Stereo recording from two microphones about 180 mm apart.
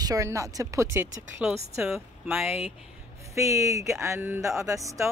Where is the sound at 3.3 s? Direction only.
15° right (ahead or behind).